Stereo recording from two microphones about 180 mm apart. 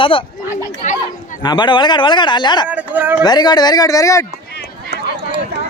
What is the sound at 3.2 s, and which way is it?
A man's voice, 25° left (ahead or behind).